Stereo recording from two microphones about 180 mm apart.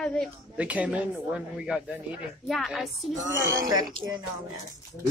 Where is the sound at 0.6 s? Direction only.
5° right (ahead or behind).